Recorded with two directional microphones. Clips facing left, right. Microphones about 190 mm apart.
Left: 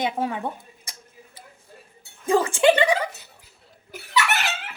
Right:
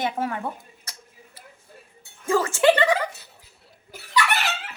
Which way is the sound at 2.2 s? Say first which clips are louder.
Left 1 dB; 15° left (ahead or behind).